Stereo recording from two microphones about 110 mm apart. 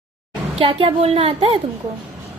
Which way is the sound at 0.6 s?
55° right (ahead or behind).